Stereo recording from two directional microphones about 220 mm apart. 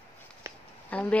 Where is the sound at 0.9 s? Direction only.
5° left (ahead or behind).